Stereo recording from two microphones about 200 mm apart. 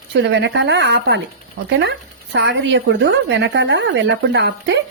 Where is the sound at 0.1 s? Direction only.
60° right (ahead or behind).